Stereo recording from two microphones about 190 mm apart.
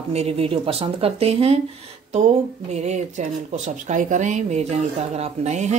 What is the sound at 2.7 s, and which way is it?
Speech, 35° right (ahead or behind).